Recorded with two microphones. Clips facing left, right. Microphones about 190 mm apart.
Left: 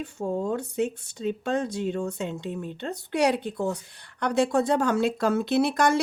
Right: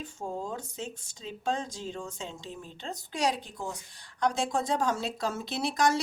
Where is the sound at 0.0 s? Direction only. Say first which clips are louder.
Left 8 dB; 65° left (ahead or behind).